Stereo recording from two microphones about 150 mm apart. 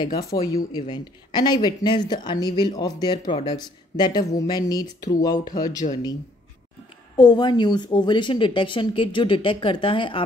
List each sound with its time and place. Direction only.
0.0 s speech: 25° left (ahead or behind)
7.2 s a woman's voice: 30° left (ahead or behind)